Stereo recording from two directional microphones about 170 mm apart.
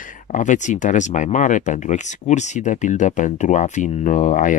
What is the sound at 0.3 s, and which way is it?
Speech, 45° left (ahead or behind).